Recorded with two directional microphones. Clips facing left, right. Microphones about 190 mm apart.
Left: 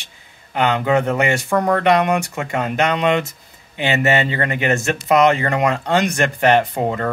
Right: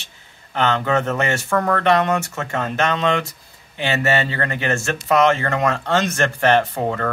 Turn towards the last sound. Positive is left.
turn(degrees=15)  # may be behind; listen again after turning